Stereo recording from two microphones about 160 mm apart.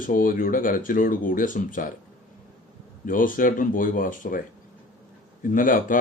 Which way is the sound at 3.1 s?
60° left (ahead or behind).